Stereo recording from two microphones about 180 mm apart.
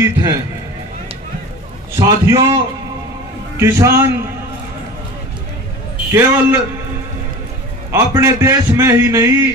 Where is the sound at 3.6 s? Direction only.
15° right (ahead or behind).